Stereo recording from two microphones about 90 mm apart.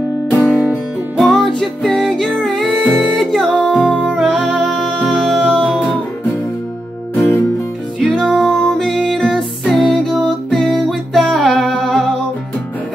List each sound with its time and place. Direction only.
0.4 s music: 5° right (ahead or behind)
2.9 s music: 10° right (ahead or behind)
3.2 s music: 5° left (ahead or behind)
7.2 s music: 25° left (ahead or behind)
8.0 s music: centre (ahead or behind)